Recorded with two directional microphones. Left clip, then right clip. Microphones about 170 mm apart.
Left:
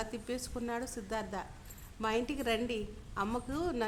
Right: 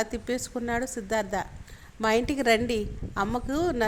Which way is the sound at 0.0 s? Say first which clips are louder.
Right 9 dB; 25° right (ahead or behind).